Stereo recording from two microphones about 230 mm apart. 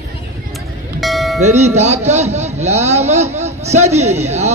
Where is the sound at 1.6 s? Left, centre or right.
Right.